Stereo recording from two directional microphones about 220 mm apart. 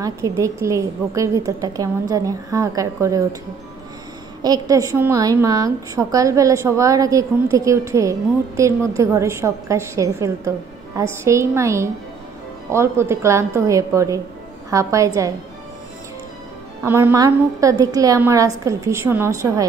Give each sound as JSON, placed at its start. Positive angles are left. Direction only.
{"t": 0.0, "sound": "a woman's voice", "side_deg": -15}
{"t": 4.4, "sound": "a woman's voice", "side_deg": -15}
{"t": 16.8, "sound": "a woman's voice", "side_deg": -10}